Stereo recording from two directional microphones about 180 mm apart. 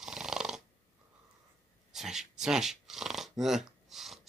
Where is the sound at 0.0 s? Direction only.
5° right (ahead or behind).